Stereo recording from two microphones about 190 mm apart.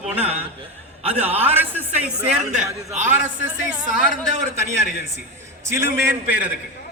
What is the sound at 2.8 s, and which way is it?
A man's voice, 40° right (ahead or behind).